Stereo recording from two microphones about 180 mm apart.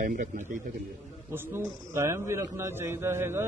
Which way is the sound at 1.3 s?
15° right (ahead or behind).